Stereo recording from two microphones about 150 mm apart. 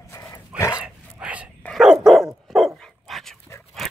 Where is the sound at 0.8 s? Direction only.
10° right (ahead or behind).